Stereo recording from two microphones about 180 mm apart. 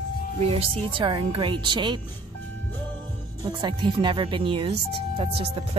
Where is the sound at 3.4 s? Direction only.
25° right (ahead or behind).